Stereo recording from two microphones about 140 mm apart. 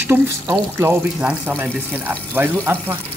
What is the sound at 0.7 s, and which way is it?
Speech, 15° right (ahead or behind).